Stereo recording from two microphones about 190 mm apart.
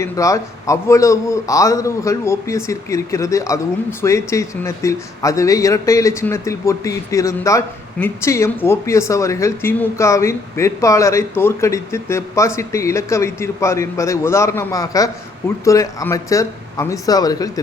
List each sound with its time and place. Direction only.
0.0 s speech: 15° left (ahead or behind)